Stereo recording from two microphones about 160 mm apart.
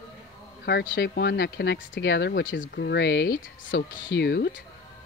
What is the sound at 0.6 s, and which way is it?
Speech, 90° left.